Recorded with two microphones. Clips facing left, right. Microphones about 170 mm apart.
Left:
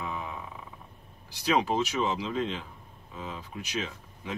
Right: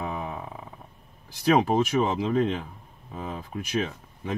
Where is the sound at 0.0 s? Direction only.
50° right (ahead or behind).